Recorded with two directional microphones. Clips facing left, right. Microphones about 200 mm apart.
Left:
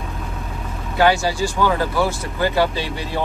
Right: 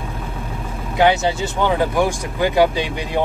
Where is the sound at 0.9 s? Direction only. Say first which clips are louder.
Right 1 dB; 20° right (ahead or behind).